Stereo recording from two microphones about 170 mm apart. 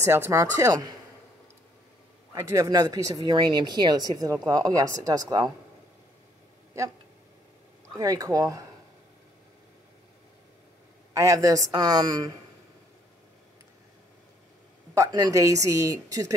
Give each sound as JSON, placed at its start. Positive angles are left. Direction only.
{"t": 0.0, "sound": "speech", "side_deg": -15}
{"t": 2.3, "sound": "speech", "side_deg": -20}
{"t": 8.0, "sound": "speech", "side_deg": -20}
{"t": 11.1, "sound": "speech", "side_deg": -20}
{"t": 15.0, "sound": "speech", "side_deg": -25}